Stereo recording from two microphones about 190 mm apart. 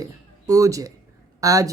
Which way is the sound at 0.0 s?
15° right (ahead or behind).